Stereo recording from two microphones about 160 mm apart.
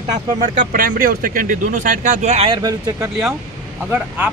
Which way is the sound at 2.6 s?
20° right (ahead or behind).